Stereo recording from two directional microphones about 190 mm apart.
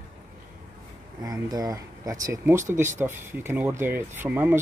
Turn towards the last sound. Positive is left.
turn(degrees=-10)  # may be behind; listen again after turning